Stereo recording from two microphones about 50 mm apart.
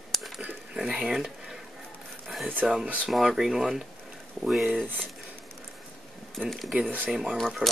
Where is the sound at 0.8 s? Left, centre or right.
Centre.